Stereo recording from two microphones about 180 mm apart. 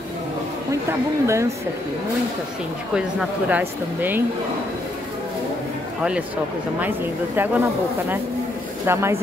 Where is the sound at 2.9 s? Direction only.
5° right (ahead or behind).